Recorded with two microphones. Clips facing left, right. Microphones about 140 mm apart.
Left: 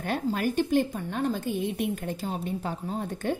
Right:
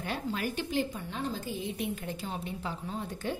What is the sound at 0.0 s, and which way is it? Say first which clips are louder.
A woman's voice: left 6 dB; 50° left (ahead or behind).